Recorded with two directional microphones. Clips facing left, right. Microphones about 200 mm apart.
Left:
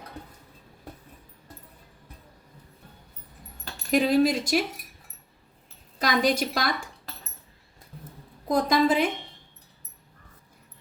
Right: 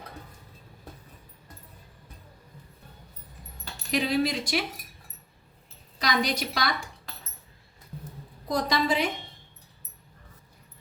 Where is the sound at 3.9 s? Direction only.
45° left (ahead or behind).